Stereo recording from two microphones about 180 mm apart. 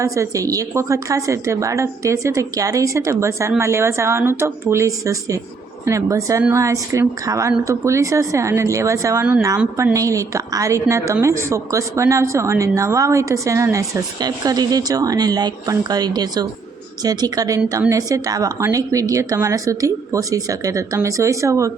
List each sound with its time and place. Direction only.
0.0 s a woman's voice: 15° right (ahead or behind)